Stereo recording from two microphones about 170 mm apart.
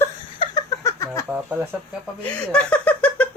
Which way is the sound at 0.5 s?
20° left (ahead or behind).